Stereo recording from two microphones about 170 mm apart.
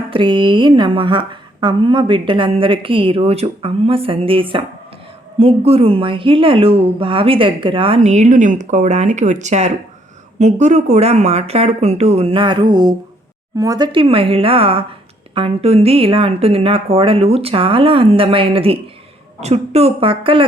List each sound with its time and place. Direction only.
0.1 s a woman's voice: 30° right (ahead or behind)